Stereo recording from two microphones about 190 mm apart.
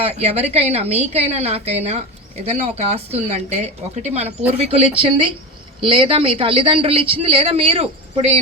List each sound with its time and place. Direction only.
0.0 s speech: 35° right (ahead or behind)